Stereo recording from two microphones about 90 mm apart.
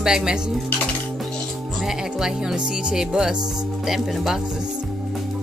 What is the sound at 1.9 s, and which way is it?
Speech, 5° right (ahead or behind).